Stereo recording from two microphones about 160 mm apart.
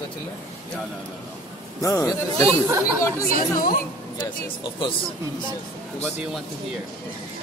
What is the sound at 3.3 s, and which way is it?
Speech, 60° left (ahead or behind).